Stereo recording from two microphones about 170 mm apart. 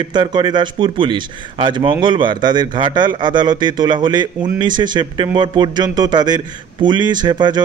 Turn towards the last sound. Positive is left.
turn(degrees=-25)  # may be behind; listen again after turning